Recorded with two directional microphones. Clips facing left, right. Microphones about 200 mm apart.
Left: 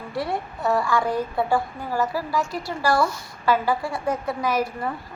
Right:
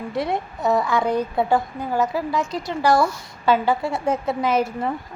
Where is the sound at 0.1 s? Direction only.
20° right (ahead or behind).